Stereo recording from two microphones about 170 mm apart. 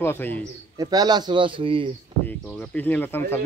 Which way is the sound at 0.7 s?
25° right (ahead or behind).